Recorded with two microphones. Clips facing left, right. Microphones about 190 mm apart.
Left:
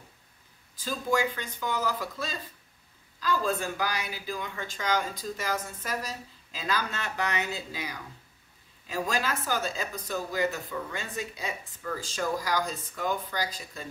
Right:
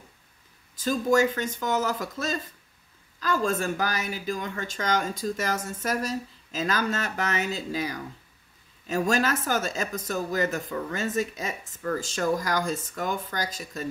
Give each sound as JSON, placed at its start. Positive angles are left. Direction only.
{"t": 0.8, "sound": "a woman's voice", "side_deg": -45}
{"t": 8.8, "sound": "a woman's voice", "side_deg": -45}